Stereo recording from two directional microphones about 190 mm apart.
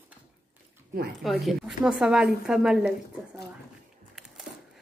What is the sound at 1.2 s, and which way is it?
A woman's voice, centre (ahead or behind).